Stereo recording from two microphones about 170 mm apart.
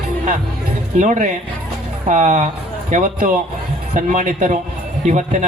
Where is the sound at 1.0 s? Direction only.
45° right (ahead or behind).